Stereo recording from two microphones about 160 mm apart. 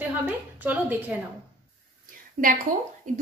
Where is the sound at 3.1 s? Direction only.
50° right (ahead or behind).